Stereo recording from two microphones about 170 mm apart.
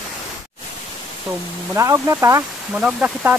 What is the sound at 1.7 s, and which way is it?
Speech, 15° right (ahead or behind).